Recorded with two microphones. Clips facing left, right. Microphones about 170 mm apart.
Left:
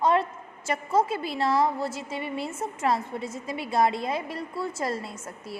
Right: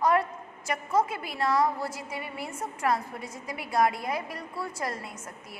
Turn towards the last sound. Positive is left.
turn(degrees=30)  # may be behind; listen again after turning